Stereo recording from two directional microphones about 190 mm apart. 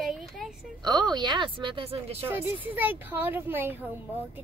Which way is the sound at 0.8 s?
20° right (ahead or behind).